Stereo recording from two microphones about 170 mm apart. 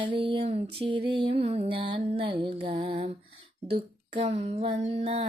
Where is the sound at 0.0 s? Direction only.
30° right (ahead or behind).